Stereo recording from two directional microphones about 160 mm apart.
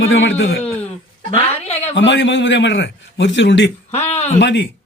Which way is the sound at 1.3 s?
40° left (ahead or behind).